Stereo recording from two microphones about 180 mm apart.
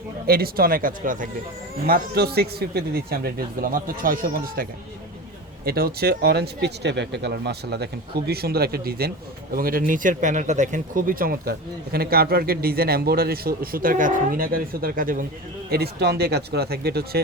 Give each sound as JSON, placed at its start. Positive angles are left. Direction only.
{"t": 0.3, "sound": "speech", "side_deg": -55}
{"t": 1.9, "sound": "speech", "side_deg": -60}
{"t": 15.7, "sound": "speech", "side_deg": -65}